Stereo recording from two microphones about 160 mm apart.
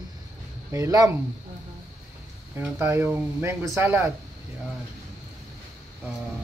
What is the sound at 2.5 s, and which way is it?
Speech, 15° right (ahead or behind).